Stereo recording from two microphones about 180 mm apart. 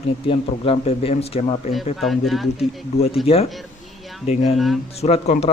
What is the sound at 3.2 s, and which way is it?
Speech, 30° left (ahead or behind).